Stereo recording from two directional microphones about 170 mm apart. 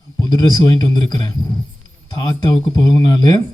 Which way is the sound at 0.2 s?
25° left (ahead or behind).